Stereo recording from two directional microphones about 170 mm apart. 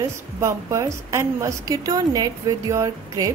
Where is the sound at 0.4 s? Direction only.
15° right (ahead or behind).